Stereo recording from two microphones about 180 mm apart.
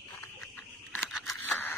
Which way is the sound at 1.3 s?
10° left (ahead or behind).